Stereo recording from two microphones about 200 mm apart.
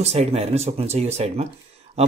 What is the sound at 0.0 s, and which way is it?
Speech, 30° right (ahead or behind).